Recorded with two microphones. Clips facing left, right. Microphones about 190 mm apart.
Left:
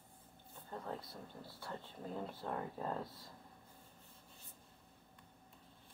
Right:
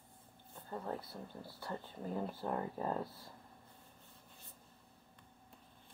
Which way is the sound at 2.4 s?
10° right (ahead or behind).